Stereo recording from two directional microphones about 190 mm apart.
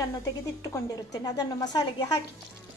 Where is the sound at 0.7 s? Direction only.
20° left (ahead or behind).